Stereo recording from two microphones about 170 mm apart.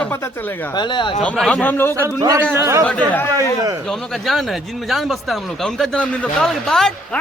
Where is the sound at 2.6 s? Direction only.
15° right (ahead or behind).